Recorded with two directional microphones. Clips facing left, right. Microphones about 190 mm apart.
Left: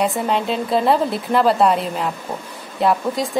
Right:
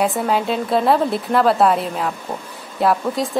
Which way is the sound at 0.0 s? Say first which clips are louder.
Right 1 dB; centre (ahead or behind).